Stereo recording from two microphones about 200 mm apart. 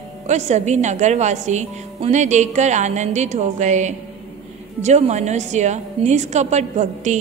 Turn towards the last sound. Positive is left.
turn(degrees=-35)  # may be behind; listen again after turning